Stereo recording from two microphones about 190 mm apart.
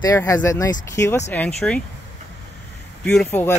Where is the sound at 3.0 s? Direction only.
5° left (ahead or behind).